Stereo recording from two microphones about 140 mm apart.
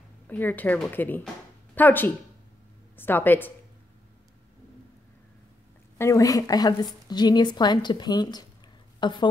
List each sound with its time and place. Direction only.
0.3 s speech: 10° left (ahead or behind)
5.9 s a woman's voice: 20° left (ahead or behind)